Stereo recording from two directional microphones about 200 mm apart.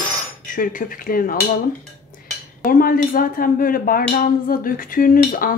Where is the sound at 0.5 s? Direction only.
45° left (ahead or behind).